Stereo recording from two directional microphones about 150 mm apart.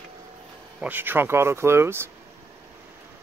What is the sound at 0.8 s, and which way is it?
Speech, 10° right (ahead or behind).